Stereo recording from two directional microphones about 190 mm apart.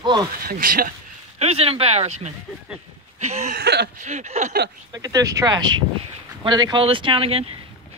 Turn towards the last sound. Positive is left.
turn(degrees=-30)  # may be behind; listen again after turning